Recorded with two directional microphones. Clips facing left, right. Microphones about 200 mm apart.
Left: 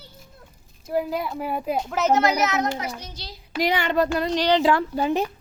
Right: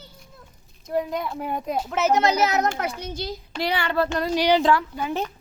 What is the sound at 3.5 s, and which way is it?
Child singing, 20° left (ahead or behind).